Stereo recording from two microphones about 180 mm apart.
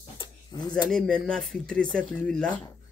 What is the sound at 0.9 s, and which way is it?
Speech, 5° left (ahead or behind).